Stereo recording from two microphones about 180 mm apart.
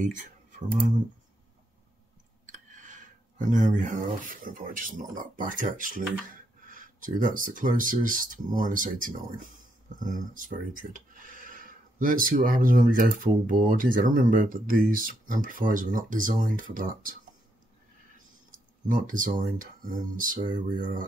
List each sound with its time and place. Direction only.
0.0 s computer keyboard: 45° right (ahead or behind)
2.4 s speech: 45° right (ahead or behind)
18.9 s speech: 50° right (ahead or behind)